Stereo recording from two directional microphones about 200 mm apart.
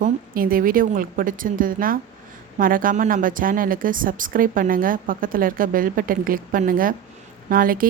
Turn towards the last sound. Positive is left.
turn(degrees=-45)  # may be behind; listen again after turning